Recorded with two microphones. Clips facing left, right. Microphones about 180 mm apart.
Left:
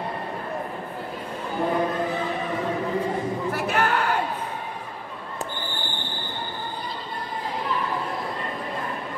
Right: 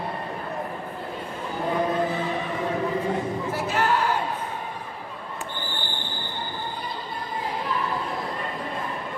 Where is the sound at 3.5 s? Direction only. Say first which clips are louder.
Left 1 dB; 65° left (ahead or behind).